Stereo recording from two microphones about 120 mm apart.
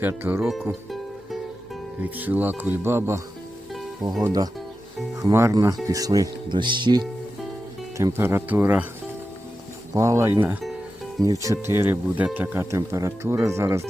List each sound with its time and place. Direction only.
0.0 s speech: 15° right (ahead or behind)
0.7 s music: centre (ahead or behind)
2.0 s speech: 15° right (ahead or behind)
4.2 s speech: 30° right (ahead or behind)
7.9 s speech: 20° right (ahead or behind)
9.9 s speech: 25° right (ahead or behind)